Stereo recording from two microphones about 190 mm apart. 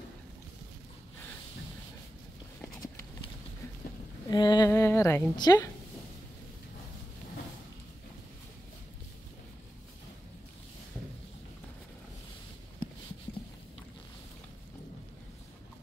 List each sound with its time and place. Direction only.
4.3 s a woman's voice: 20° left (ahead or behind)